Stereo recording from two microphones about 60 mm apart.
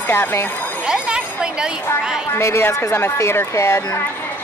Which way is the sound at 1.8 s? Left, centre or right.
Left.